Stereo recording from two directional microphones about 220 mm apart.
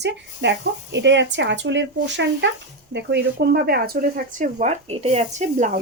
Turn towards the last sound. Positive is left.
turn(degrees=-35)  # may be behind; listen again after turning